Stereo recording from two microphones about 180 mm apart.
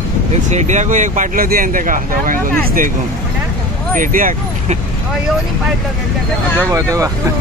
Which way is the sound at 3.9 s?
50° right (ahead or behind).